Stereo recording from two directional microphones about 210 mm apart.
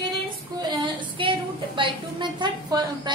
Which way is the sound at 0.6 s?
20° right (ahead or behind).